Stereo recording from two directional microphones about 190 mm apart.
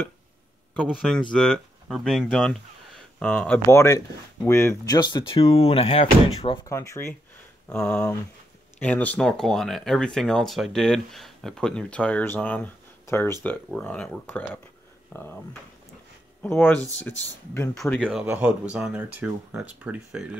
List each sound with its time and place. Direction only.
0.8 s speech: centre (ahead or behind); by 6.6 s 30° left (ahead or behind)
6.6 s speech: 15° left (ahead or behind)
16.4 s speech: 10° left (ahead or behind)
18.2 s speech: 10° right (ahead or behind)